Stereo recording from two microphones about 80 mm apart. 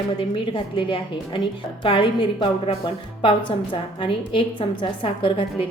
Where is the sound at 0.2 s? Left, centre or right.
Left.